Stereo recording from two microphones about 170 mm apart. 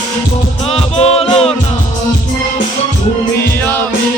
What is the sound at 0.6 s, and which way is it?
Music, 35° left (ahead or behind).